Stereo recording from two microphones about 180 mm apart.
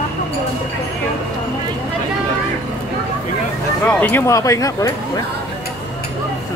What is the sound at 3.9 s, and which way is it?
Speech, 10° left (ahead or behind).